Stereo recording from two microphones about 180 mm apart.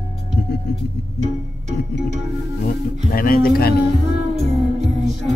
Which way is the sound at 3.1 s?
55° left (ahead or behind).